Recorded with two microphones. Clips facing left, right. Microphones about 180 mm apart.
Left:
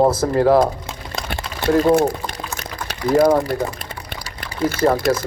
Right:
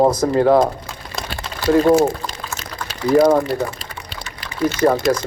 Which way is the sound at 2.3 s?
55° left (ahead or behind).